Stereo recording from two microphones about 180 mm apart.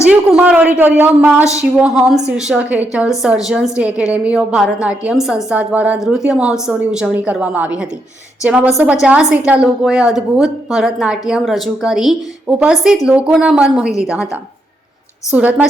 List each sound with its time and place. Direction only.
0.1 s a woman's voice: 10° right (ahead or behind)
13.9 s a woman's voice: 15° left (ahead or behind)
15.3 s a woman's voice: 10° right (ahead or behind)